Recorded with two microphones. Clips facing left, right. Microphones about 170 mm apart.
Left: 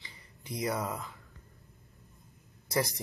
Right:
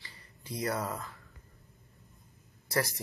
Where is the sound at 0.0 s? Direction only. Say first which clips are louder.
Left 1 dB; 15° left (ahead or behind).